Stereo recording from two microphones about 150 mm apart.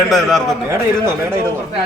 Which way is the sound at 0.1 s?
Centre (ahead or behind).